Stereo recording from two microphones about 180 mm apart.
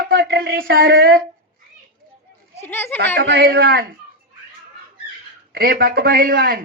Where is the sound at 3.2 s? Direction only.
80° right; by 3.9 s 55° right (ahead or behind).